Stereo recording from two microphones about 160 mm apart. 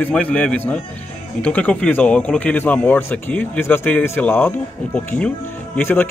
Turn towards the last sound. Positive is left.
turn(degrees=15)  # may be behind; listen again after turning